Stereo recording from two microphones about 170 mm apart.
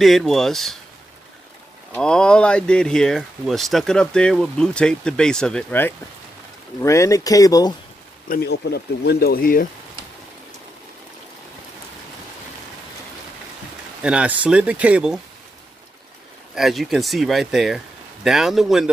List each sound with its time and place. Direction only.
0.0 s speech: centre (ahead or behind)
2.0 s speech: 5° left (ahead or behind); by 7.7 s 20° left (ahead or behind)
8.3 s speech: 70° left (ahead or behind)
14.0 s speech: 10° right (ahead or behind)
16.5 s speech: centre (ahead or behind)